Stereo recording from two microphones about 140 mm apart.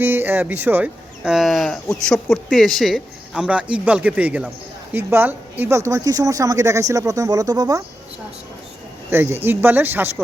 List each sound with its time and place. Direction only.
0.0 s speech: 15° right (ahead or behind)
9.0 s speech: 15° right (ahead or behind)